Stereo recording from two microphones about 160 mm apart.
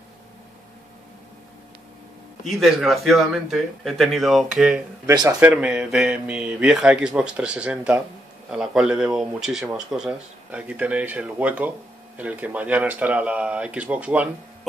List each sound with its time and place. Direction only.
2.4 s speech: centre (ahead or behind)
5.0 s speech: 25° right (ahead or behind)
5.4 s speech: 5° right (ahead or behind)